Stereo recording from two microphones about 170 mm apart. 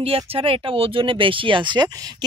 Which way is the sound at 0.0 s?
35° right (ahead or behind).